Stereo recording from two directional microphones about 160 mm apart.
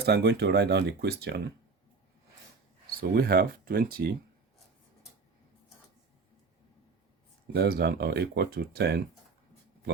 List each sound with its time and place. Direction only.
0.0 s speech: 90° right
3.0 s speech: 75° right (ahead or behind)
7.5 s speech: 85° right